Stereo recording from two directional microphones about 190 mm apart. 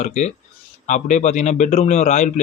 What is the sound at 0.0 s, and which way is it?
Speech, 40° left (ahead or behind).